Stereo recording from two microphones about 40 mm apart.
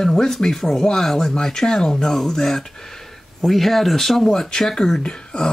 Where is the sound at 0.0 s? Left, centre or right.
Centre.